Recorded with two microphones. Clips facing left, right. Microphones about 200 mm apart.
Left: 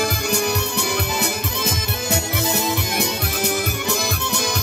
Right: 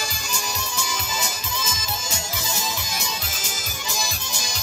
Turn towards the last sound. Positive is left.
turn(degrees=60)  # may be behind; listen again after turning